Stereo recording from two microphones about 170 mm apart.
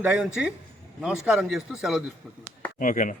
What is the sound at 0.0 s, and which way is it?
Speech, 5° right (ahead or behind).